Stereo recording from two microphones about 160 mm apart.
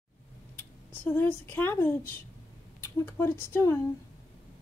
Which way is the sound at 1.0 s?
10° left (ahead or behind).